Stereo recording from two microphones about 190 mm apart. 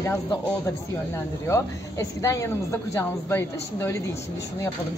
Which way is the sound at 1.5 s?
15° left (ahead or behind).